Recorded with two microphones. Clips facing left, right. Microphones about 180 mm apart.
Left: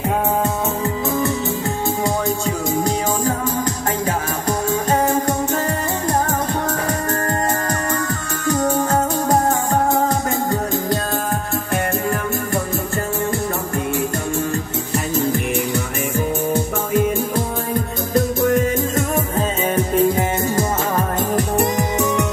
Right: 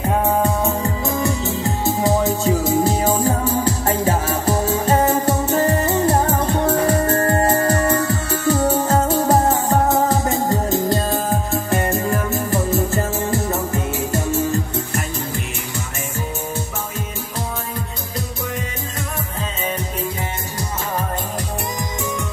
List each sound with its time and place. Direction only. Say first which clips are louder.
1.2 s music: even; centre (ahead or behind)
11.7 s music: right 1 dB; centre (ahead or behind)
18.1 s music: left 12 dB; 50° left (ahead or behind)
20.0 s music: left 9 dB; 55° left (ahead or behind)